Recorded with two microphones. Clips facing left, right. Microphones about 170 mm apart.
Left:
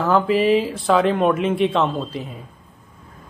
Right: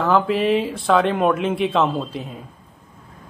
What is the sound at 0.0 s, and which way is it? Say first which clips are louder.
A man's voice: left 1 dB; centre (ahead or behind).